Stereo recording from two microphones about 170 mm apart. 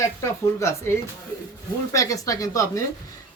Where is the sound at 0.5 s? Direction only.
15° left (ahead or behind).